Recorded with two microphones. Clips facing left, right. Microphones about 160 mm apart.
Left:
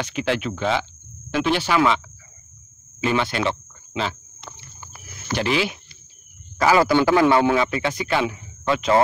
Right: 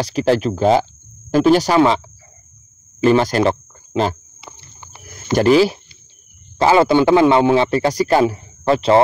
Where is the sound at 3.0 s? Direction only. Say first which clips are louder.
Right 8 dB; 40° right (ahead or behind).